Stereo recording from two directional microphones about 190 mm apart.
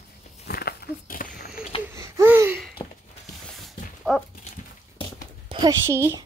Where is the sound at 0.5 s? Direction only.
55° left (ahead or behind).